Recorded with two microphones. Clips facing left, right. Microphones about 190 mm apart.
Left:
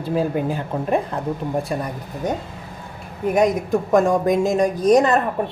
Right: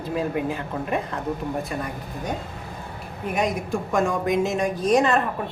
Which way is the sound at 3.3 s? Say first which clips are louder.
Left 7 dB; 40° left (ahead or behind).